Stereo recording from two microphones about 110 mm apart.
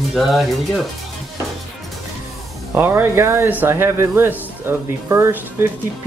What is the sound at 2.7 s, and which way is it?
Speech, 20° right (ahead or behind).